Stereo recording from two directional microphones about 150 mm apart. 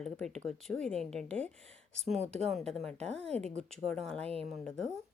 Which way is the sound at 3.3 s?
45° right (ahead or behind).